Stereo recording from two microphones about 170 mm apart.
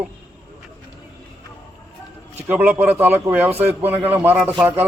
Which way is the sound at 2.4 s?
10° right (ahead or behind).